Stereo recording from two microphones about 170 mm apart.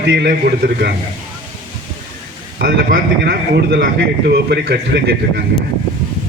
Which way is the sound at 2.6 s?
65° right (ahead or behind).